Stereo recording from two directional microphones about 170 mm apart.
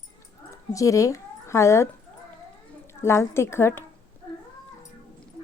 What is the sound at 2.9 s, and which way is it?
Speech, 15° left (ahead or behind).